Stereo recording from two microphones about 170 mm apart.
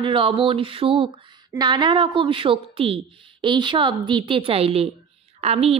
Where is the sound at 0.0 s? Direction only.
30° right (ahead or behind).